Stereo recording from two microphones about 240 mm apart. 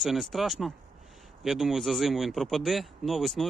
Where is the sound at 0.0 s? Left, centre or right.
Centre.